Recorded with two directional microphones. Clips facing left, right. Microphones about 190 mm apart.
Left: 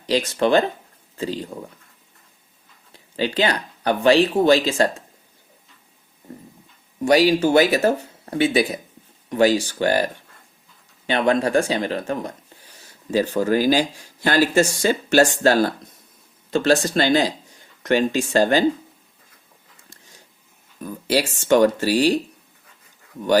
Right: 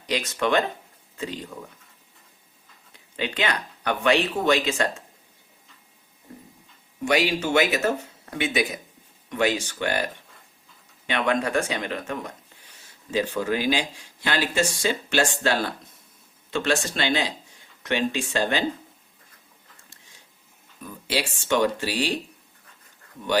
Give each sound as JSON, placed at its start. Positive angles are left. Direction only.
{"t": 0.0, "sound": "speech", "side_deg": 30}
{"t": 2.9, "sound": "speech", "side_deg": 35}
{"t": 7.0, "sound": "speech", "side_deg": 35}
{"t": 11.0, "sound": "speech", "side_deg": 35}
{"t": 20.8, "sound": "speech", "side_deg": 40}